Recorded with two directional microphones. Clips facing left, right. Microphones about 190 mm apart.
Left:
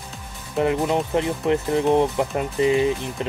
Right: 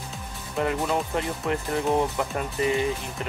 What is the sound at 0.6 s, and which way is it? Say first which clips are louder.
Speech: left 5 dB; 20° left (ahead or behind).